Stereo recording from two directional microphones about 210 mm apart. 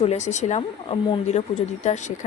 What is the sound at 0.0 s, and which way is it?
Speech, 30° left (ahead or behind).